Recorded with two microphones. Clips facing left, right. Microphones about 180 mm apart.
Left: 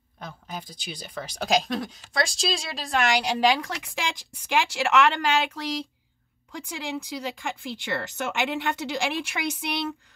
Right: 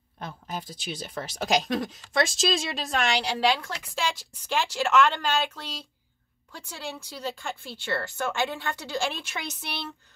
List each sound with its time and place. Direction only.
0.5 s speech: 5° right (ahead or behind)
3.3 s speech: 15° left (ahead or behind)